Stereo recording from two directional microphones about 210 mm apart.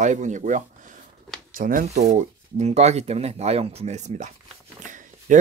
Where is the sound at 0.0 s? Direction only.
35° right (ahead or behind).